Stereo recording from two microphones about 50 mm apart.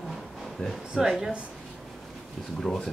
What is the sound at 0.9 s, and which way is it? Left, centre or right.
Speech, centre.